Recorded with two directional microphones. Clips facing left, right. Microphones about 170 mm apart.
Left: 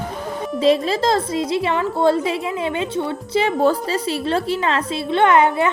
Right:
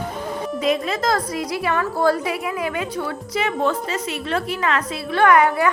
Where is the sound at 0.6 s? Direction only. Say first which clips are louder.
Left 6 dB; 30° left (ahead or behind).